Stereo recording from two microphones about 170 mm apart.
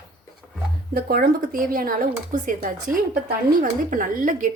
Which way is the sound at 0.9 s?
60° right (ahead or behind).